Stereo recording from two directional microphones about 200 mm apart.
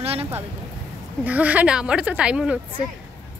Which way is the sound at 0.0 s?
30° right (ahead or behind).